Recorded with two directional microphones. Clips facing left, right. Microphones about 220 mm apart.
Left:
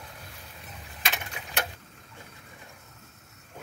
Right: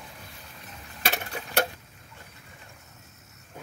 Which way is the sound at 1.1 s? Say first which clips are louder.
Right 5 dB; 40° right (ahead or behind).